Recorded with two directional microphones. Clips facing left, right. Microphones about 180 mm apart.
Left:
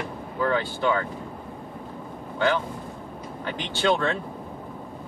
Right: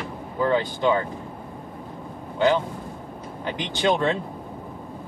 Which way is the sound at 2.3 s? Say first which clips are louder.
Right 4 dB; 20° right (ahead or behind).